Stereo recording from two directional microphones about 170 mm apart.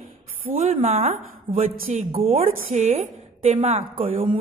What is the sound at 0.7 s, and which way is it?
Speech, 35° right (ahead or behind).